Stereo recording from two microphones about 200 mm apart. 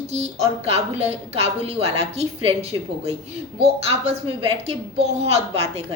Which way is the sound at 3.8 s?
35° right (ahead or behind).